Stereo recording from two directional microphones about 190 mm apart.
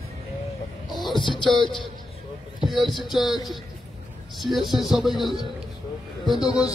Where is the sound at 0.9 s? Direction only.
Centre (ahead or behind).